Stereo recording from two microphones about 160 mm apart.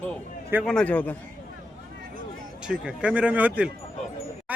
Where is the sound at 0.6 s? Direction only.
5° left (ahead or behind).